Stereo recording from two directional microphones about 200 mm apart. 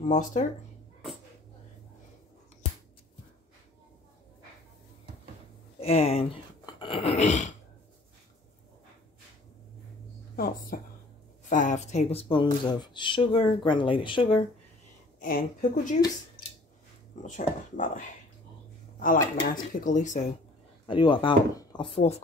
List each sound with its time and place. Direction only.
0.1 s speech: 40° left (ahead or behind)
5.8 s speech: 30° left (ahead or behind)
6.6 s a sound: 25° left (ahead or behind)
10.3 s a woman's voice: 45° left (ahead or behind); by 14.4 s 25° left (ahead or behind)
15.1 s speech: 45° left (ahead or behind)
17.2 s speech: 40° left (ahead or behind)
20.8 s speech: 25° left (ahead or behind)
22.0 s speech: 35° left (ahead or behind)